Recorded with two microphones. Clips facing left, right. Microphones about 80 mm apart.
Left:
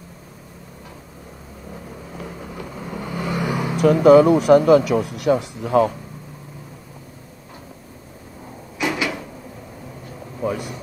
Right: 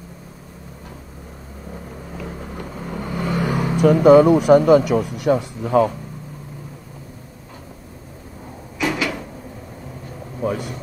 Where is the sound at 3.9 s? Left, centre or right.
Right.